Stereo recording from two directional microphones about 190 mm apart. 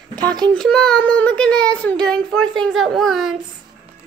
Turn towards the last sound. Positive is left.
turn(degrees=0)  # may be behind; listen again after turning